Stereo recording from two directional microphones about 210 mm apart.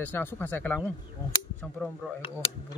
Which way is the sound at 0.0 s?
10° left (ahead or behind).